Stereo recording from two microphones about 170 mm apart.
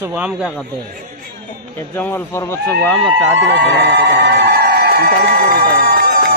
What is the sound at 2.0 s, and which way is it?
Speech, 10° left (ahead or behind).